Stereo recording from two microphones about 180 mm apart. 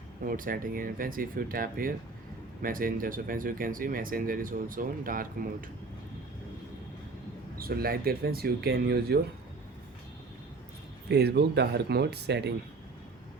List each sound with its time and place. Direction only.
0.3 s speech: 50° right (ahead or behind)
7.6 s speech: 55° right (ahead or behind)
11.1 s speech: 65° right (ahead or behind)